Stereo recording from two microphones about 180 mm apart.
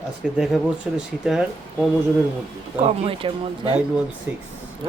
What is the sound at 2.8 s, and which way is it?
Speech, 30° right (ahead or behind).